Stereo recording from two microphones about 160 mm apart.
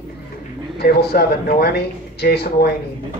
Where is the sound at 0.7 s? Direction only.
80° left.